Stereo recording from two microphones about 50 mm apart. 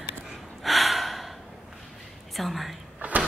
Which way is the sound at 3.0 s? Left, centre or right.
Right.